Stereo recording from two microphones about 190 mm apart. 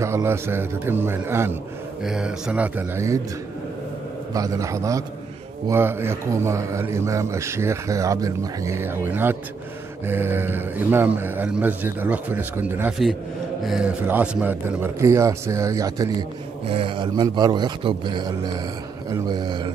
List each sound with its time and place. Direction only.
0.0 s a man's voice: 15° right (ahead or behind)
4.3 s a man's voice: 20° right (ahead or behind)